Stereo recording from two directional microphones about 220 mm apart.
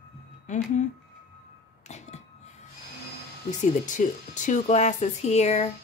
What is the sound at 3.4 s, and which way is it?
Speech, 35° left (ahead or behind).